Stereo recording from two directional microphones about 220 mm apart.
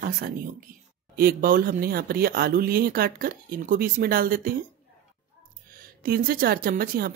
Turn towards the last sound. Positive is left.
turn(degrees=-40)  # may be behind; listen again after turning